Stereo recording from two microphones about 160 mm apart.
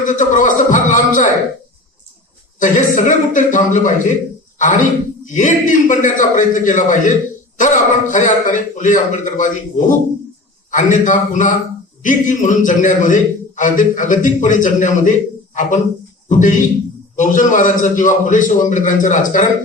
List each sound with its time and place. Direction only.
0.0 s a man's voice: 55° left (ahead or behind)
2.6 s a man's voice: 50° left (ahead or behind)
16.3 s a man's voice: 55° left (ahead or behind)